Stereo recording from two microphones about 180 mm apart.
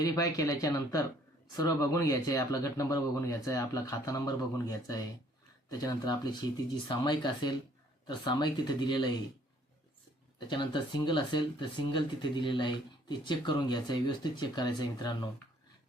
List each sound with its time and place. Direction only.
0.0 s speech: 20° left (ahead or behind)
10.5 s speech: 25° left (ahead or behind)